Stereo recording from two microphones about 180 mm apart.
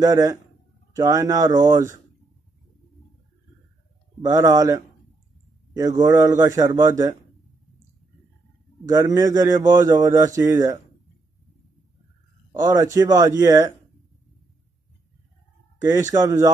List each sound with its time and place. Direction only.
0.0 s speech: 20° right (ahead or behind)
4.2 s speech: 20° right (ahead or behind)
8.8 s speech: 20° right (ahead or behind)
12.5 s speech: 20° right (ahead or behind)
16.2 s speech: 20° right (ahead or behind)